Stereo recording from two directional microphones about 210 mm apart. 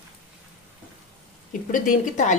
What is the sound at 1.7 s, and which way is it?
Speech, 35° left (ahead or behind).